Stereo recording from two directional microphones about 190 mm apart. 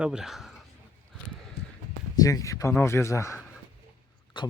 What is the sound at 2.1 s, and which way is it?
Speech, 20° left (ahead or behind).